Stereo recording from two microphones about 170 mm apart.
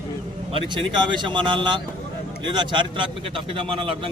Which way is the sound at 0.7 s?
30° right (ahead or behind).